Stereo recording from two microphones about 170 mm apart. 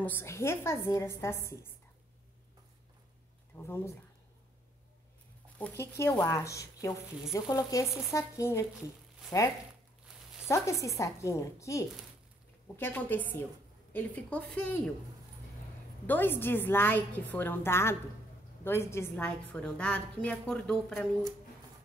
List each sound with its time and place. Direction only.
0.0 s a woman's voice: 15° left (ahead or behind)
3.5 s speech: 15° left (ahead or behind)
5.6 s a woman's voice: 15° left (ahead or behind)
10.5 s a woman's voice: 20° left (ahead or behind)
16.1 s a woman's voice: 10° left (ahead or behind)